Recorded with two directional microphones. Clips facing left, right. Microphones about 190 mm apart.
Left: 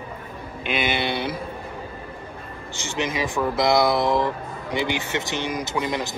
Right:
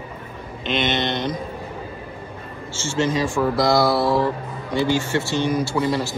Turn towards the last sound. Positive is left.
turn(degrees=15)  # may be behind; listen again after turning